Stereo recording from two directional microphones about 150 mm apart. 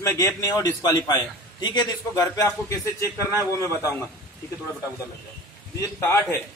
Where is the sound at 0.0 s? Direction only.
20° left (ahead or behind).